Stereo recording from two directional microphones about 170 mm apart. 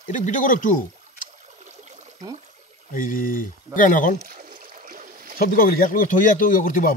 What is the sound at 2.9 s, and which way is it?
Speech, 55° left (ahead or behind).